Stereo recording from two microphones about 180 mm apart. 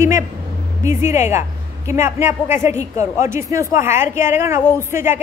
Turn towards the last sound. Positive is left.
turn(degrees=-15)  # may be behind; listen again after turning